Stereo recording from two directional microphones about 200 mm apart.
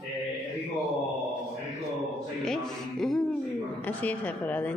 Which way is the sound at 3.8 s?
10° left (ahead or behind).